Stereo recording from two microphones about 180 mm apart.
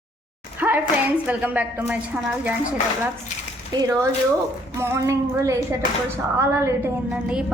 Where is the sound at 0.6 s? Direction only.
10° right (ahead or behind).